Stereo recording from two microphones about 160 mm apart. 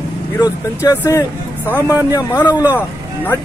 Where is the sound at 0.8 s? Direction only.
20° left (ahead or behind).